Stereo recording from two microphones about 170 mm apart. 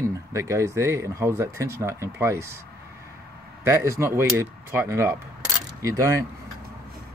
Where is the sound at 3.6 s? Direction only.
15° right (ahead or behind).